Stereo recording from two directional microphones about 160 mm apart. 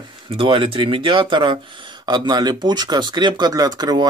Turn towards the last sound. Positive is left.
turn(degrees=-25)  # may be behind; listen again after turning